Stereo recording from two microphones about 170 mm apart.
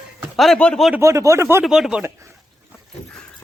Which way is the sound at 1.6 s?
5° right (ahead or behind).